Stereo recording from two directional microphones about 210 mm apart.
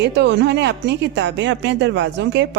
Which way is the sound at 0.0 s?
55° right (ahead or behind).